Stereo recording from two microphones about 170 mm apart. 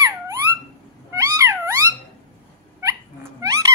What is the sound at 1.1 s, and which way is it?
Cat, 15° right (ahead or behind).